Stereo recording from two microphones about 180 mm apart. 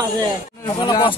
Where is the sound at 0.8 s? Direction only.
25° left (ahead or behind).